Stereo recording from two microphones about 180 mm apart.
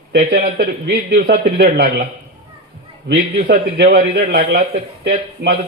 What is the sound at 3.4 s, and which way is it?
A man's voice, 65° right (ahead or behind).